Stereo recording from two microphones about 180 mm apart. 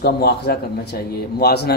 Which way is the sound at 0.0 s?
60° left (ahead or behind).